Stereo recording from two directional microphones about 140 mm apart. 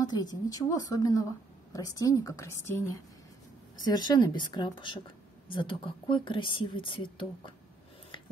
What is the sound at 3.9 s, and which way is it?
A woman's voice, 30° left (ahead or behind).